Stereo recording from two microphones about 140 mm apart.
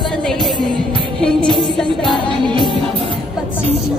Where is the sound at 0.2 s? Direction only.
Centre (ahead or behind).